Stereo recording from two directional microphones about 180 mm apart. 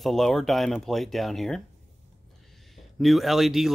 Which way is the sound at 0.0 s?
Centre (ahead or behind).